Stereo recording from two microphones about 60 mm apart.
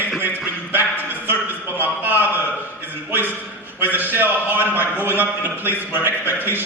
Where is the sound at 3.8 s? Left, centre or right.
Right.